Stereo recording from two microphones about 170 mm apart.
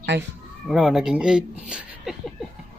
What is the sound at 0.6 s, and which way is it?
Speech, centre (ahead or behind).